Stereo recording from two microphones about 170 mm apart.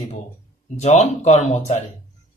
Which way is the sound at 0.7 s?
40° left (ahead or behind).